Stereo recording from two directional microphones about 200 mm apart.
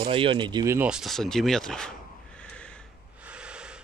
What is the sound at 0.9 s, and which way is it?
A man's voice, centre (ahead or behind).